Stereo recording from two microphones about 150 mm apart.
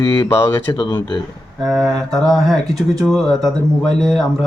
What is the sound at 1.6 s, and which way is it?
Speech, centre (ahead or behind).